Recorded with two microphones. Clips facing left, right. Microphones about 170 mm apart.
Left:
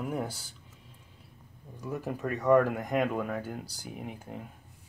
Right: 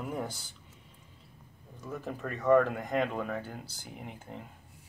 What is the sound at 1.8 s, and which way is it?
Speech, 10° left (ahead or behind).